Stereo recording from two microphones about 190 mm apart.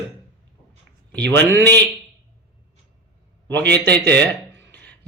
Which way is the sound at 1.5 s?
65° right (ahead or behind).